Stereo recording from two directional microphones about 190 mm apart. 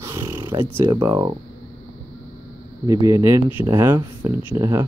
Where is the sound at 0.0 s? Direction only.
15° right (ahead or behind).